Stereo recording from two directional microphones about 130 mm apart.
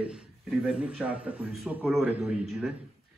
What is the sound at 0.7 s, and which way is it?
A man's voice, 5° right (ahead or behind).